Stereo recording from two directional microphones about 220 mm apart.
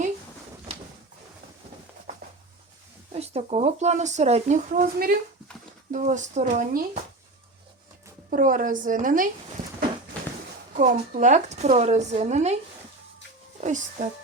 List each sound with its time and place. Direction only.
3.1 s speech: 30° right (ahead or behind)
8.3 s speech: 40° right (ahead or behind)
10.8 s speech: 35° right (ahead or behind)
13.6 s speech: 35° right (ahead or behind)